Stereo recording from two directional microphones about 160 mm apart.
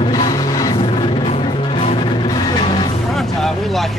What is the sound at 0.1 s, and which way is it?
Music, 20° left (ahead or behind).